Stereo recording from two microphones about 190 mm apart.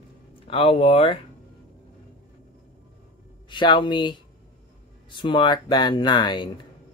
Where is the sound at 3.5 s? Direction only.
25° left (ahead or behind).